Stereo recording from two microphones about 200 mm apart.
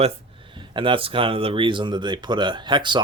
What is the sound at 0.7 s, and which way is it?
Speech, 25° right (ahead or behind).